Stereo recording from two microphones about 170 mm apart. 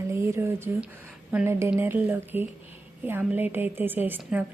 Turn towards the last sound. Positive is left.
turn(degrees=-10)  # may be behind; listen again after turning